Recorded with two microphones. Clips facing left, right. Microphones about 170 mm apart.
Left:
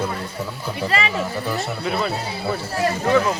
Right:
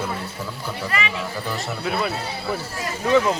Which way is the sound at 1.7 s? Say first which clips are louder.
Left 1 dB; centre (ahead or behind).